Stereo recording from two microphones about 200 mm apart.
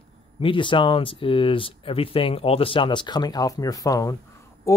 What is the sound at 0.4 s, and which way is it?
Speech, 25° left (ahead or behind).